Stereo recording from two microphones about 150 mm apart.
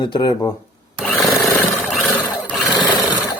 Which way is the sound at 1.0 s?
Centre (ahead or behind).